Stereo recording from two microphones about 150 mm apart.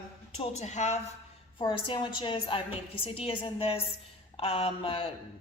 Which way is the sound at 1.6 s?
35° left (ahead or behind).